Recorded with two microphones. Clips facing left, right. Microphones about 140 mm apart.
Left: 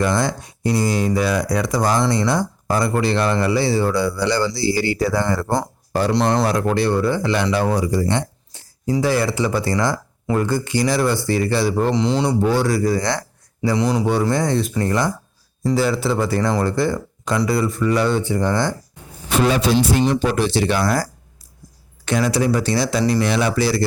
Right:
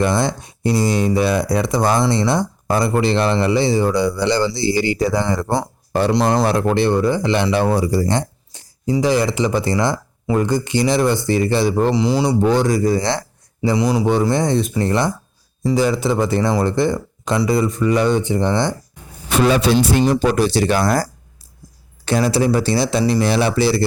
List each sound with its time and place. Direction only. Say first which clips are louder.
0.0 s speech: right 2 dB; 25° right (ahead or behind)
6.4 s speech: right 2 dB; 25° right (ahead or behind)
8.5 s speech: right 2 dB; 15° right (ahead or behind)
11.9 s speech: right 2 dB; 10° right (ahead or behind); by 13.2 s 25° right (ahead or behind)
13.6 s speech: right 2 dB; 15° right (ahead or behind)
19.3 s speech: right 2 dB; 70° right (ahead or behind)
20.1 s speech: right 3 dB; 40° right (ahead or behind)
22.0 s speech: right 2 dB; 30° right (ahead or behind)